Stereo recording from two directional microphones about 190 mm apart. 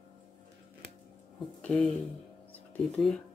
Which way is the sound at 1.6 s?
5° left (ahead or behind).